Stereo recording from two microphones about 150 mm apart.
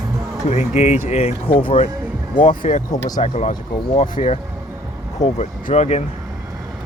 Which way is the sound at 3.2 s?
45° left (ahead or behind).